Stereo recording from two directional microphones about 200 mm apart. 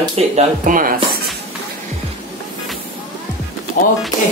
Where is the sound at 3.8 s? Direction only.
45° left (ahead or behind).